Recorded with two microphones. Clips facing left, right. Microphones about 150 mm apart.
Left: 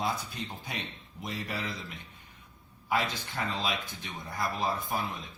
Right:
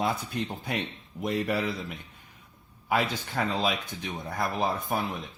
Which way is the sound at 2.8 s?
60° right (ahead or behind).